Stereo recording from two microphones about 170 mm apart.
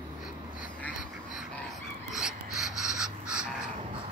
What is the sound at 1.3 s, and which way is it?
Fowl, centre (ahead or behind).